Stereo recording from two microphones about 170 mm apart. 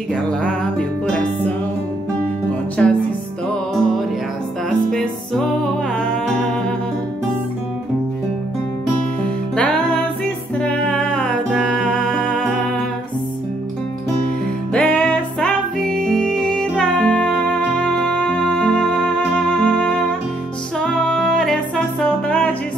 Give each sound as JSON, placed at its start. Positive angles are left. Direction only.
{"t": 0.1, "sound": "music", "side_deg": 5}
{"t": 2.8, "sound": "music", "side_deg": 5}
{"t": 4.6, "sound": "music", "side_deg": 5}
{"t": 9.6, "sound": "music", "side_deg": 5}
{"t": 14.7, "sound": "music", "side_deg": 5}